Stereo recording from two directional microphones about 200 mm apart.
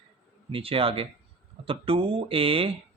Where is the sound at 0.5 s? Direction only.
30° right (ahead or behind).